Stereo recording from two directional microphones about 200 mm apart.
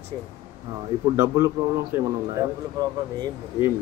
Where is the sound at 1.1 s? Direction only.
15° right (ahead or behind).